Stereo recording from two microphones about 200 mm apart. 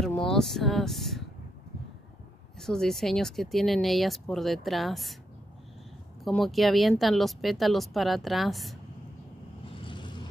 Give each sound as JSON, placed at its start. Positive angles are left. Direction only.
{"t": 0.0, "sound": "speech", "side_deg": 5}
{"t": 2.6, "sound": "speech", "side_deg": 0}
{"t": 6.2, "sound": "speech", "side_deg": 0}
{"t": 9.8, "sound": "vehicle", "side_deg": 25}